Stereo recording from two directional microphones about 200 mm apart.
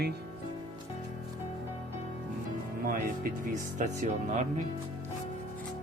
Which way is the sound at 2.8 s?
45° right (ahead or behind).